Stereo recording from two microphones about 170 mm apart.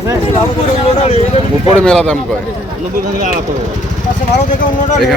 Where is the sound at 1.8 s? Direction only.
5° left (ahead or behind).